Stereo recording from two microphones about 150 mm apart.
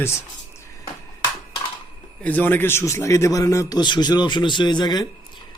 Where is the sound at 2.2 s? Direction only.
10° left (ahead or behind); by 5.1 s 30° left (ahead or behind).